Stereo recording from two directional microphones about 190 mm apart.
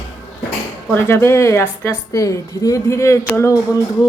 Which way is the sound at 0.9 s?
15° left (ahead or behind).